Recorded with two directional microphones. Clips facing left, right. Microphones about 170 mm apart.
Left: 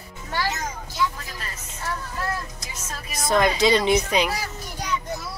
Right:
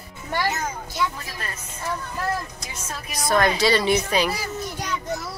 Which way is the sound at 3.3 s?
20° left (ahead or behind).